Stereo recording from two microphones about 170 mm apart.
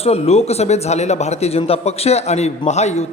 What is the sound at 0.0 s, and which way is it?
A man's voice, 40° left (ahead or behind).